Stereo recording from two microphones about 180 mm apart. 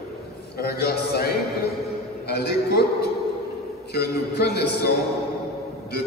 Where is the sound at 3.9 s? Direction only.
60° left (ahead or behind).